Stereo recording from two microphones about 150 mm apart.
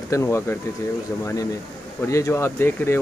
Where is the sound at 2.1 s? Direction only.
20° left (ahead or behind).